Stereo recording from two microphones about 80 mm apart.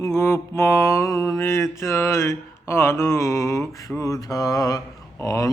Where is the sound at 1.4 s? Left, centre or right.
Left.